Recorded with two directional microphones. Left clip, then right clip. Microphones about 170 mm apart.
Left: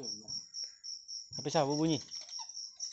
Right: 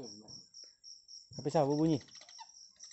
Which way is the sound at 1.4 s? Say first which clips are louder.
Even; 30° right (ahead or behind).